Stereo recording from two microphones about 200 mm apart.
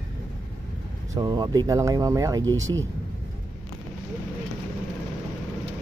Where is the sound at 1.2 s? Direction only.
20° right (ahead or behind).